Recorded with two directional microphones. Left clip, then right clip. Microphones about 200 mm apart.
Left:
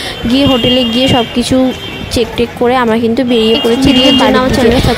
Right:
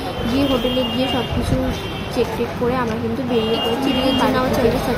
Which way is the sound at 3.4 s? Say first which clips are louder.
Left 8 dB; 55° left (ahead or behind).